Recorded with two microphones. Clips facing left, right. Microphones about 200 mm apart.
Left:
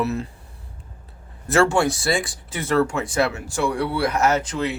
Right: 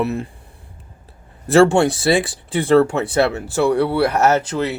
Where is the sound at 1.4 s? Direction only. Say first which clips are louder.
Right 6 dB; 30° right (ahead or behind).